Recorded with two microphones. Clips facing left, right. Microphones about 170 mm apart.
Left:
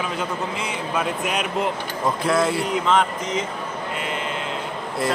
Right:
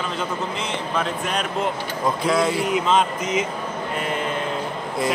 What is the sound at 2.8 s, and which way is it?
Speech, 15° right (ahead or behind).